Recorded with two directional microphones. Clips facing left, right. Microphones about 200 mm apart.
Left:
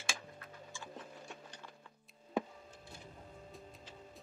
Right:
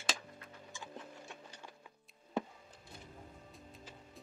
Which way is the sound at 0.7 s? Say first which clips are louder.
Right 1 dB; 20° right (ahead or behind).